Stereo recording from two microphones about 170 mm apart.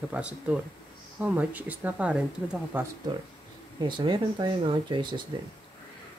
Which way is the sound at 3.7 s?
25° right (ahead or behind).